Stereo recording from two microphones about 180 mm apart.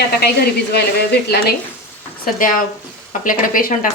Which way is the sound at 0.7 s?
65° left (ahead or behind).